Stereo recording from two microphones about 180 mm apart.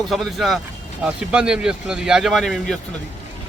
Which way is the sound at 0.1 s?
Centre (ahead or behind).